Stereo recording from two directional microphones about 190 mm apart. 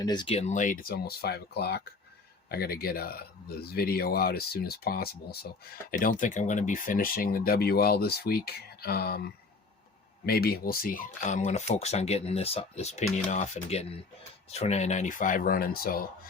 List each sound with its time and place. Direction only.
0.0 s speech: 20° left (ahead or behind); by 16.0 s 50° left (ahead or behind)